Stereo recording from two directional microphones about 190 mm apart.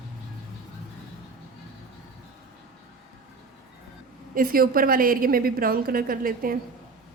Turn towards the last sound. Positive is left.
turn(degrees=-50)  # may be behind; listen again after turning